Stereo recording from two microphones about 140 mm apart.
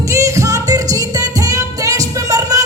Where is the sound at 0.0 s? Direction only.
20° right (ahead or behind).